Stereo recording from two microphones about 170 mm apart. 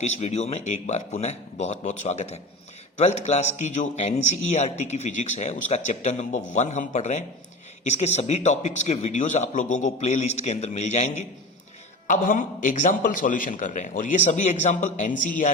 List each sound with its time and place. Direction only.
0.0 s a man's voice: 40° left (ahead or behind)